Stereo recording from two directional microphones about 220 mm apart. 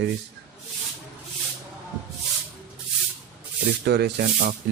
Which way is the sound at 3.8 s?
50° right (ahead or behind).